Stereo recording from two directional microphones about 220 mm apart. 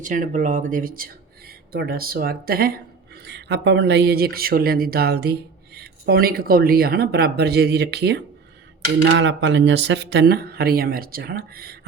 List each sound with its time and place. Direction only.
0.0 s speech: 35° right (ahead or behind)